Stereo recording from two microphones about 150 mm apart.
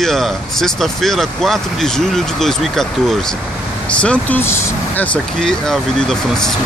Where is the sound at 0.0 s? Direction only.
Centre (ahead or behind).